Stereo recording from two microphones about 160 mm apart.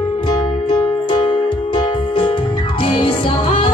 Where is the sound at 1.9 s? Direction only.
35° left (ahead or behind).